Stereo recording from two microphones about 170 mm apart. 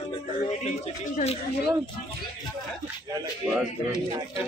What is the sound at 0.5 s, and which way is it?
Speech, 45° left (ahead or behind).